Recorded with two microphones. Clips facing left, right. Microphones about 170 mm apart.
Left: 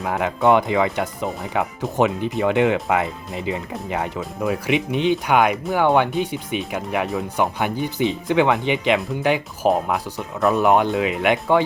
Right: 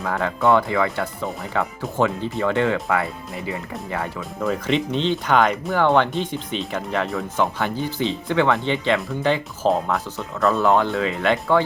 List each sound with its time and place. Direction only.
0.0 s speech: 15° left (ahead or behind)